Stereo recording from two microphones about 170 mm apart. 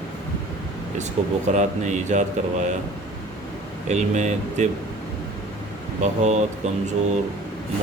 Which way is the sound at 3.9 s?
45° right (ahead or behind).